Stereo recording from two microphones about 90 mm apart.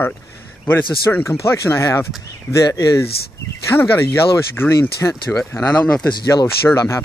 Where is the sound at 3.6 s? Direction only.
25° left (ahead or behind).